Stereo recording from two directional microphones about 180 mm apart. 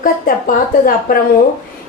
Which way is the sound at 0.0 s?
50° left (ahead or behind).